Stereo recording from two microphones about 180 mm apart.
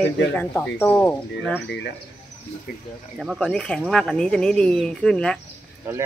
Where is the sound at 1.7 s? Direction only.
70° left (ahead or behind).